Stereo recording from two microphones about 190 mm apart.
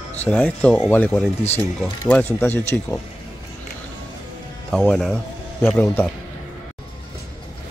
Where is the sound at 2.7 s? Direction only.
5° left (ahead or behind).